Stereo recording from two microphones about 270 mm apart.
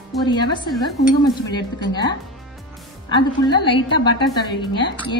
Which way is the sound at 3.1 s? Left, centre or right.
Centre.